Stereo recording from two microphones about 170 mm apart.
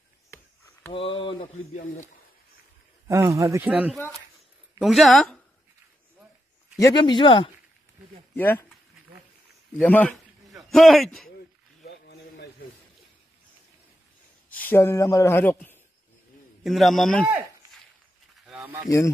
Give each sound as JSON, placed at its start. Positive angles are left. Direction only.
{"t": 0.9, "sound": "speech", "side_deg": 30}
{"t": 3.1, "sound": "speech", "side_deg": -20}
{"t": 3.6, "sound": "speech", "side_deg": -5}
{"t": 6.8, "sound": "speech", "side_deg": 25}
{"t": 8.4, "sound": "speech", "side_deg": 10}
{"t": 9.8, "sound": "a man's voice", "side_deg": 10}
{"t": 11.8, "sound": "a sound", "side_deg": 75}
{"t": 14.5, "sound": "a man's voice", "side_deg": 10}
{"t": 16.6, "sound": "speech", "side_deg": 0}
{"t": 18.4, "sound": "a sound", "side_deg": -5}